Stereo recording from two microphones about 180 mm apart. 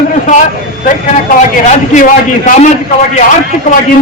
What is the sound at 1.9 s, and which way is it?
Speech, 45° left (ahead or behind).